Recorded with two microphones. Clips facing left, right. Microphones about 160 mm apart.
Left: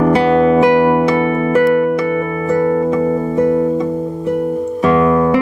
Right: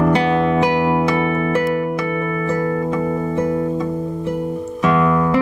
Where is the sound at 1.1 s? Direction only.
35° left (ahead or behind).